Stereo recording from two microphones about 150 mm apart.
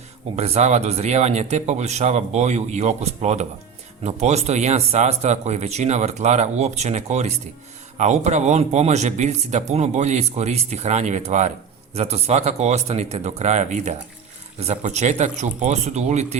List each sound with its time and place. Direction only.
0.3 s speech: 45° right (ahead or behind)